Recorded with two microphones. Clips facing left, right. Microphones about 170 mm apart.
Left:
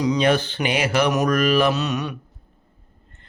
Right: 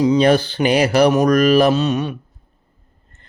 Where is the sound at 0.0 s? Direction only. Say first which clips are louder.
Right 5 dB; 30° right (ahead or behind).